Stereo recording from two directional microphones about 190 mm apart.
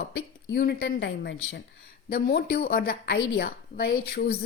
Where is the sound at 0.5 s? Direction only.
55° left (ahead or behind); by 1.4 s 70° left (ahead or behind).